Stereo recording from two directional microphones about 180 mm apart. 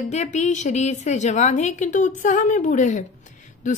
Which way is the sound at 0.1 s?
40° left (ahead or behind).